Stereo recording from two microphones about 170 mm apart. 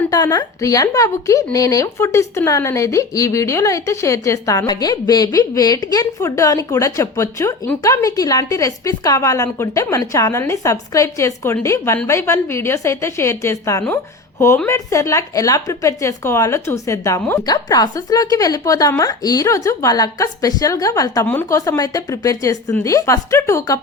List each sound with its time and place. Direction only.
0.1 s a woman's voice: 20° left (ahead or behind)